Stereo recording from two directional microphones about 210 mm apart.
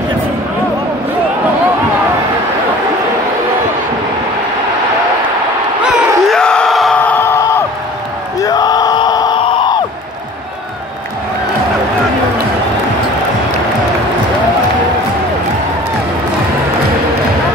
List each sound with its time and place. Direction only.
5.9 s crowd: centre (ahead or behind); by 9.8 s 25° left (ahead or behind)